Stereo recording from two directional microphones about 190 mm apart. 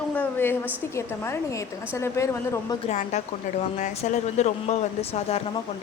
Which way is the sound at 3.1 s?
40° left (ahead or behind).